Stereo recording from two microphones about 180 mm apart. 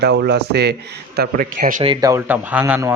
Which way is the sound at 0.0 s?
65° right (ahead or behind).